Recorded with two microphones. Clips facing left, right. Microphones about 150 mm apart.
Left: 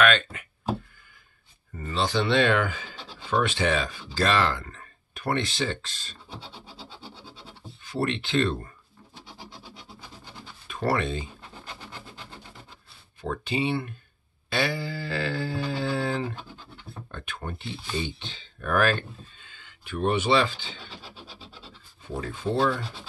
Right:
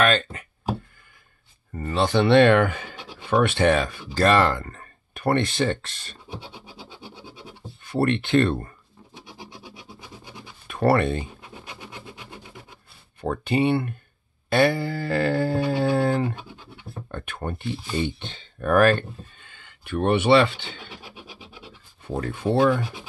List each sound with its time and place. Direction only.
0.0 s speech: 35° right (ahead or behind)
1.8 s speech: 55° right (ahead or behind)
6.3 s scratch: 15° right (ahead or behind)
7.8 s speech: 55° right (ahead or behind)
9.2 s rub: 15° right (ahead or behind)
10.7 s speech: 60° right (ahead or behind)
11.4 s a sound: 15° right (ahead or behind)
13.2 s speech: 55° right (ahead or behind)
14.5 s mantra: 55° right (ahead or behind)
16.3 s scratch: 10° right (ahead or behind)
17.1 s speech: 55° right (ahead or behind)
20.9 s rub: 15° right (ahead or behind)
22.1 s speech: 55° right (ahead or behind)